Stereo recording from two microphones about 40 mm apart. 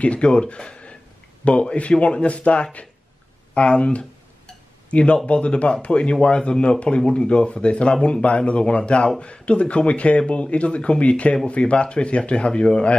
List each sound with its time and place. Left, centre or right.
0.0 s speech: left